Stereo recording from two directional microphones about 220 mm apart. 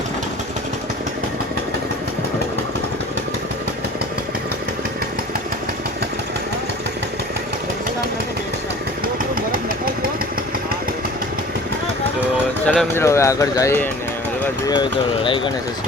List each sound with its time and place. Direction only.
9.3 s vehicle: 40° right (ahead or behind)
12.6 s speech: 5° left (ahead or behind); by 15.5 s 20° left (ahead or behind)